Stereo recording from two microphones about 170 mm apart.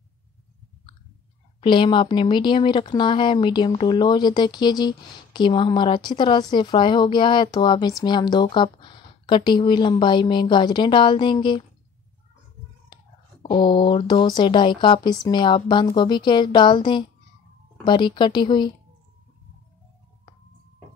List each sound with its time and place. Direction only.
1.6 s speech: 30° left (ahead or behind)
12.9 s speech: 30° left (ahead or behind)